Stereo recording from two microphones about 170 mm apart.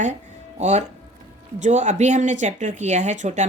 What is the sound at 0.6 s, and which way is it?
Speech, 40° right (ahead or behind).